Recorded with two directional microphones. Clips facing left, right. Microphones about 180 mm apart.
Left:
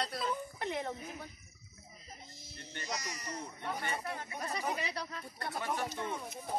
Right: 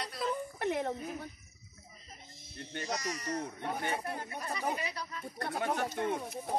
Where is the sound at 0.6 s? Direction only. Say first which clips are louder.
Right 5 dB; 55° right (ahead or behind).